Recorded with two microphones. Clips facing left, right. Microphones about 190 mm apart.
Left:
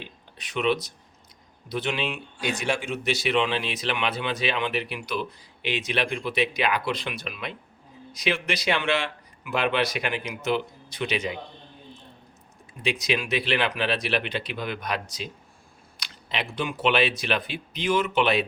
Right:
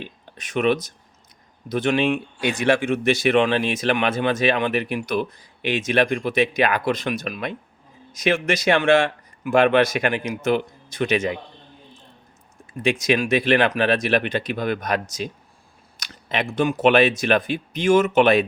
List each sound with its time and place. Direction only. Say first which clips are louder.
0.0 s speech: right 6 dB; 45° right (ahead or behind)
12.8 s speech: right 7 dB; 50° right (ahead or behind)